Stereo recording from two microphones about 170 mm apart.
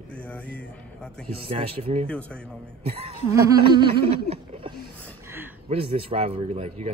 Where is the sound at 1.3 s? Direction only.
35° right (ahead or behind).